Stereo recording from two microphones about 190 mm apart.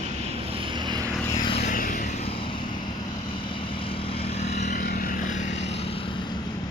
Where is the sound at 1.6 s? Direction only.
45° left (ahead or behind).